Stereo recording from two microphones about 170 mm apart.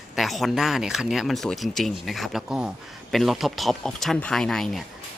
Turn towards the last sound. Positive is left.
turn(degrees=0)  # may be behind; listen again after turning